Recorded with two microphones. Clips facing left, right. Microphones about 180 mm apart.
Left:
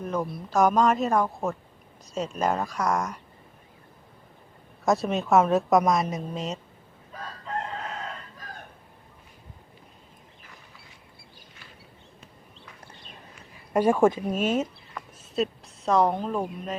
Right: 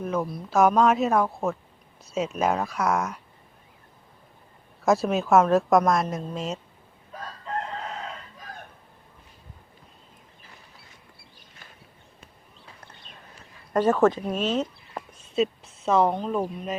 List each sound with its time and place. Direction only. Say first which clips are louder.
0.0 s a woman's voice: right 2 dB; 5° right (ahead or behind)
4.9 s a woman's voice: right 2 dB; centre (ahead or behind)
13.7 s speech: even; 10° left (ahead or behind)
15.2 s a sound: right 3 dB; centre (ahead or behind)
15.9 s a woman's voice: right 1 dB; 5° right (ahead or behind)